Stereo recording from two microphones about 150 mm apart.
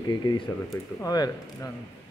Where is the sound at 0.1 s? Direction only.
25° left (ahead or behind).